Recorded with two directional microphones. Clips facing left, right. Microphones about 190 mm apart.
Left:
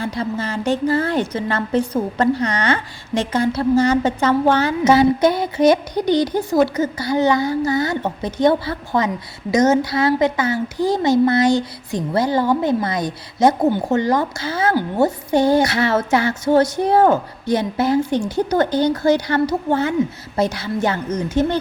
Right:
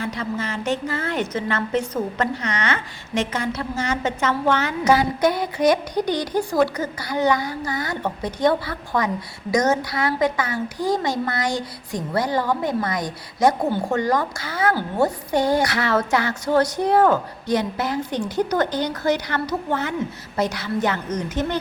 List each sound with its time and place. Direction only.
0.0 s a woman's voice: 35° left (ahead or behind)